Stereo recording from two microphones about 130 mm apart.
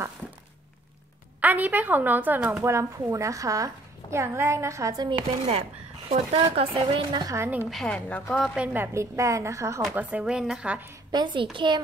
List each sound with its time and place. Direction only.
1.4 s a woman's voice: 10° right (ahead or behind)
2.6 s a woman's voice: 20° right (ahead or behind)
5.5 s a woman's voice: 50° right (ahead or behind); by 7.3 s 35° right (ahead or behind)
7.3 s a woman's voice: 15° right (ahead or behind)
7.7 s a woman's voice: 5° left (ahead or behind)
8.7 s a woman's voice: 20° right (ahead or behind)
9.8 s a woman's voice: 10° right (ahead or behind)
11.1 s a child's voice: 35° right (ahead or behind)